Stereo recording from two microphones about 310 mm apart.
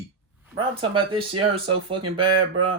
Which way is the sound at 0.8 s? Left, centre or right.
Centre.